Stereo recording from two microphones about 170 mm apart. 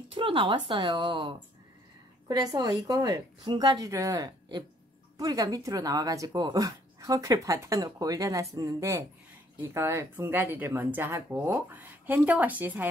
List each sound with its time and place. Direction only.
0.1 s speech: 30° right (ahead or behind); by 12.9 s 10° right (ahead or behind)